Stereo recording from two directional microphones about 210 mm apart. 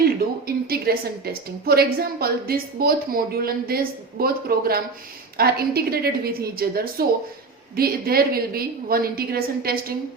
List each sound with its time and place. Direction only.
0.0 s a woman's voice: 45° right (ahead or behind)